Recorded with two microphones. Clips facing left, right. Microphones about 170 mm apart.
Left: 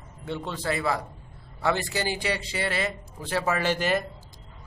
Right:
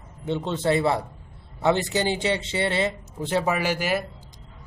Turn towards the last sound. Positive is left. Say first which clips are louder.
# even
turn(degrees=-10)  # may be behind; listen again after turning